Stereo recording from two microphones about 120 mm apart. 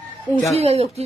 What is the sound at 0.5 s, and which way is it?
Speech, 60° right (ahead or behind).